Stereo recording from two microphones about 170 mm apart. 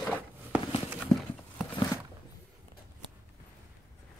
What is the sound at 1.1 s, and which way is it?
Clip-clop, centre (ahead or behind).